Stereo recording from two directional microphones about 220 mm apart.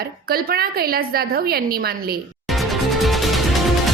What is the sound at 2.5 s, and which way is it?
Music, centre (ahead or behind).